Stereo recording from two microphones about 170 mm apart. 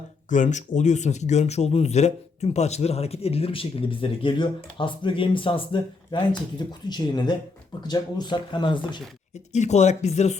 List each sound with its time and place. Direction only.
0.3 s speech: 45° left (ahead or behind); by 9.0 s 25° left (ahead or behind)
9.5 s speech: 40° left (ahead or behind)